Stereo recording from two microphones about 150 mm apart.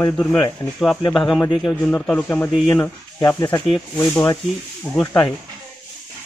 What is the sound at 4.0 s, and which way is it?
Speech, 15° left (ahead or behind).